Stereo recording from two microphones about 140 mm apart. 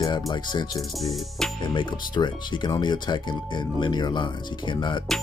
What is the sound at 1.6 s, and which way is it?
Speech, 35° left (ahead or behind).